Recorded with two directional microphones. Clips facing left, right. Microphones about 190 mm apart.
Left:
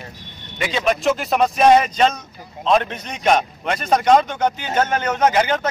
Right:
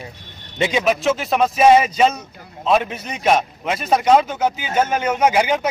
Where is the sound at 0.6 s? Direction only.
20° right (ahead or behind).